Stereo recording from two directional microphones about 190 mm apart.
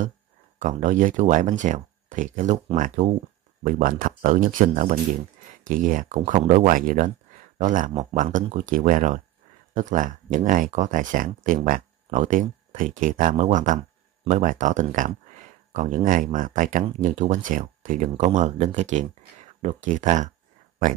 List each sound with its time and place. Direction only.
0.6 s speech: 40° right (ahead or behind)